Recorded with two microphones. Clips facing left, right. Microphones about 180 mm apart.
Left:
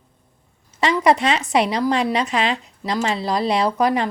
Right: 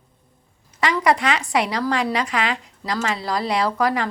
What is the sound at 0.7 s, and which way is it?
Speech, 25° left (ahead or behind).